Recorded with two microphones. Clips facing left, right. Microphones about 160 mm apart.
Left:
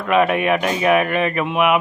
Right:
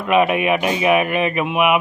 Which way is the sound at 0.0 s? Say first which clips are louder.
Even; 10° right (ahead or behind).